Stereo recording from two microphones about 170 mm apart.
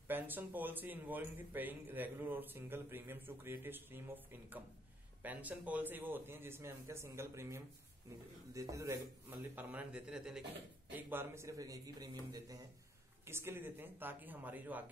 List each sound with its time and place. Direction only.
0.1 s a man's voice: 10° right (ahead or behind)